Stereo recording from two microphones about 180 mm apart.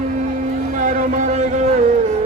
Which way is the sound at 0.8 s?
45° right (ahead or behind).